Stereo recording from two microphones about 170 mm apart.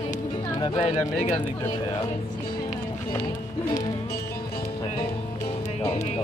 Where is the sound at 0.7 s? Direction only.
35° left (ahead or behind).